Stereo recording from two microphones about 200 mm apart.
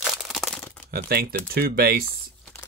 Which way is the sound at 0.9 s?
50° right (ahead or behind).